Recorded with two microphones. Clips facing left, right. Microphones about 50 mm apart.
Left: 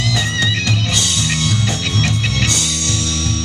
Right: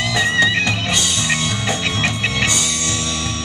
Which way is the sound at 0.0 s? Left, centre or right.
Centre.